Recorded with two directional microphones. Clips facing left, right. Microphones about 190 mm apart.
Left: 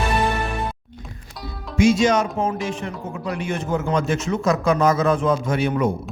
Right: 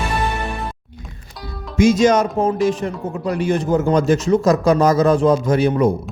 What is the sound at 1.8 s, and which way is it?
Speech, 40° right (ahead or behind).